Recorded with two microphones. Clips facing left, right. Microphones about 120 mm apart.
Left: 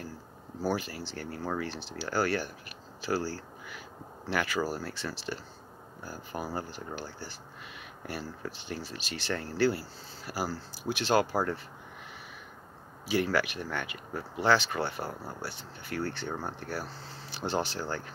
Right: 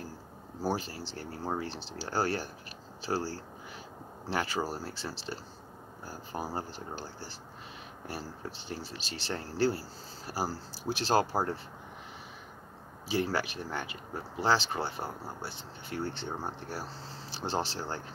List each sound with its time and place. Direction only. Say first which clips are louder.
0.7 s speech: left 1 dB; 30° right (ahead or behind)
13.1 s speech: left 3 dB; 30° right (ahead or behind)